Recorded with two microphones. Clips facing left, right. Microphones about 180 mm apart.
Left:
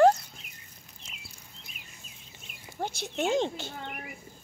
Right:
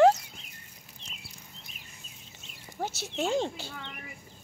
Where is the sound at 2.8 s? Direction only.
5° right (ahead or behind).